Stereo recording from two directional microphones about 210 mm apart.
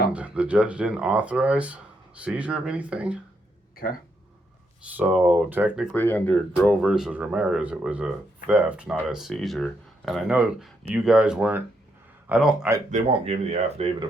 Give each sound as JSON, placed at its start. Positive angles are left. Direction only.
{"t": 0.1, "sound": "speech", "side_deg": -5}
{"t": 4.8, "sound": "speech", "side_deg": -5}
{"t": 5.9, "sound": "speech", "side_deg": 10}
{"t": 12.9, "sound": "speech", "side_deg": -30}